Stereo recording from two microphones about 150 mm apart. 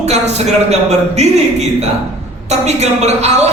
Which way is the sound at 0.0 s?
45° right (ahead or behind).